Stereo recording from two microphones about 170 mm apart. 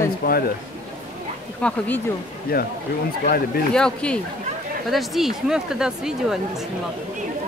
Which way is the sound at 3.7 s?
5° left (ahead or behind).